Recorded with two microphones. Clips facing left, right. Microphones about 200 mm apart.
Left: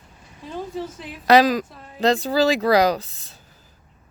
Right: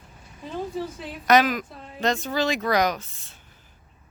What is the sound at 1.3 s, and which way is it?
Speech, 35° left (ahead or behind).